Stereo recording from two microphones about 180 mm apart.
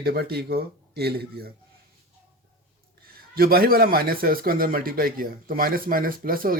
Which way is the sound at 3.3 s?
55° right (ahead or behind).